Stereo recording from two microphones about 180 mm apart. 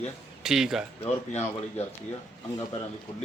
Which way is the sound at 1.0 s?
40° left (ahead or behind).